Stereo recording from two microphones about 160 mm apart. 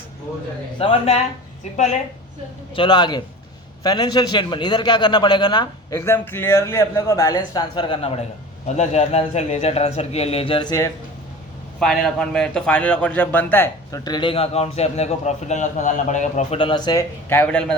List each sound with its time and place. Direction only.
0.8 s a man's voice: 40° left (ahead or behind)
2.7 s a man's voice: 30° left (ahead or behind)
6.0 s a man's voice: 15° left (ahead or behind)
11.8 s a man's voice: 5° left (ahead or behind)